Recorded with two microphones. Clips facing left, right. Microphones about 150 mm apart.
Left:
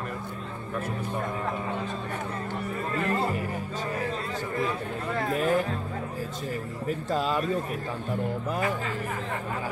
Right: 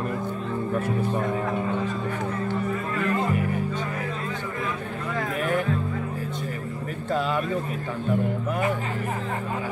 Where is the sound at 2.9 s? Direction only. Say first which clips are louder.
Right 1 dB; 35° left (ahead or behind).